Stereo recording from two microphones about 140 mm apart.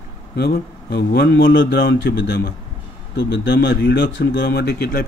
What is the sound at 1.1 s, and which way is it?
Speech, 90° left.